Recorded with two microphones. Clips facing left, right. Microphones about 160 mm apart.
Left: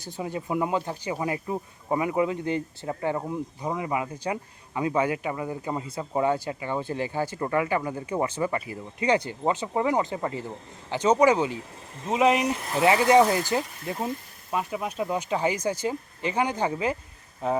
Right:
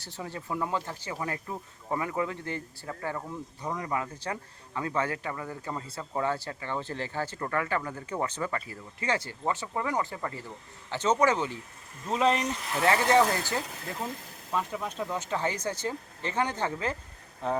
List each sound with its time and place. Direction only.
0.0 s speech: 15° left (ahead or behind)